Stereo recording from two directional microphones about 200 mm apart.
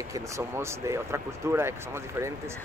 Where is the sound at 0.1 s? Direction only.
15° right (ahead or behind).